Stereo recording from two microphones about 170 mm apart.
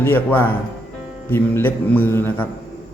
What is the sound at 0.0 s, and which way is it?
A man's voice, 10° left (ahead or behind).